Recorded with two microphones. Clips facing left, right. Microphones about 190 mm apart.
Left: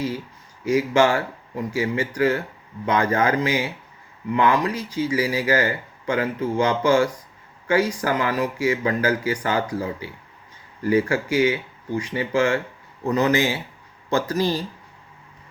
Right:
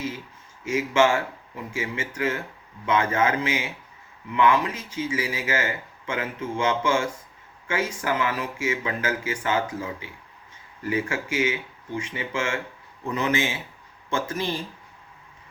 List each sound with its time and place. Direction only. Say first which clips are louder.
0.6 s speech: left 3 dB; 40° left (ahead or behind)